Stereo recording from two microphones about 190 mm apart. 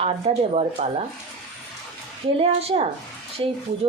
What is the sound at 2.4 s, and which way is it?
Speech, 30° right (ahead or behind).